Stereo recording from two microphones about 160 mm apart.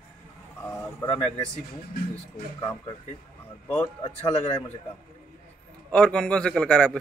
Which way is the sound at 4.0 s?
40° left (ahead or behind).